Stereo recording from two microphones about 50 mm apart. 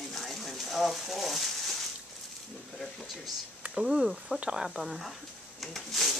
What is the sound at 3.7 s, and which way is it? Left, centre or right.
Speech, centre.